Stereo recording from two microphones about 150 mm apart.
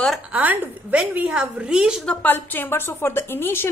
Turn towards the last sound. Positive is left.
turn(degrees=15)  # may be behind; listen again after turning